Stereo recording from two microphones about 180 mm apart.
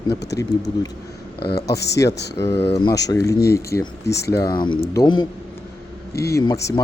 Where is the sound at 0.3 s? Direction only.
20° left (ahead or behind).